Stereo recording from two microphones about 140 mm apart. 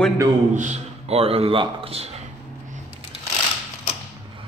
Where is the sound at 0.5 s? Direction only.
60° right (ahead or behind).